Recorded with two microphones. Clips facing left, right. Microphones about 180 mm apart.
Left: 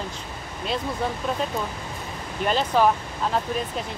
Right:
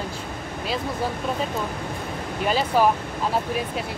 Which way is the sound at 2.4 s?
5° right (ahead or behind).